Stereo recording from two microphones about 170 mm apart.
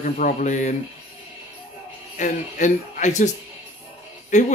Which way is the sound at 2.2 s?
45° left (ahead or behind).